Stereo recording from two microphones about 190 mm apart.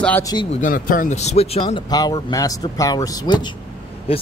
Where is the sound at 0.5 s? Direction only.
45° left (ahead or behind).